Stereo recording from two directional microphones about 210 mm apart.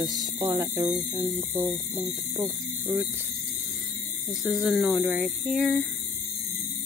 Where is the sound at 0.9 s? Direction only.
5° right (ahead or behind).